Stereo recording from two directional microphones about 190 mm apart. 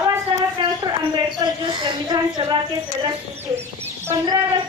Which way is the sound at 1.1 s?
25° right (ahead or behind).